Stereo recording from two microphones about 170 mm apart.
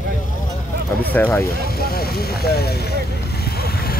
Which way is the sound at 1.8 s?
65° left (ahead or behind).